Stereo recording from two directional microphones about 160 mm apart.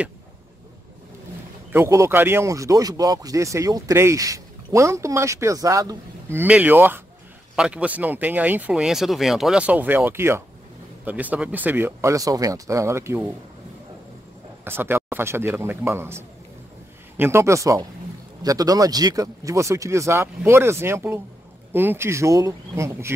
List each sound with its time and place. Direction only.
1.7 s speech: 15° right (ahead or behind)
6.4 s speech: 10° right (ahead or behind)
14.6 s speech: 15° right (ahead or behind)